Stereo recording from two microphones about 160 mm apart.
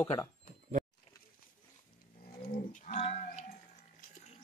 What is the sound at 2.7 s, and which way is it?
Child singing, 50° left (ahead or behind).